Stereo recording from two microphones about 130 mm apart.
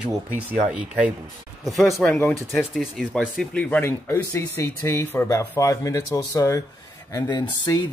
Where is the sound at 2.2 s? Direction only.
15° left (ahead or behind).